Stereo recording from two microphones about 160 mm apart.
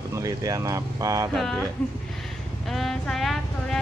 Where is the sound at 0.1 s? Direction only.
20° right (ahead or behind).